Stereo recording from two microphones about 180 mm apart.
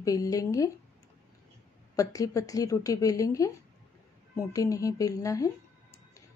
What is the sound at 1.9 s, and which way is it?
A woman's voice, 20° left (ahead or behind).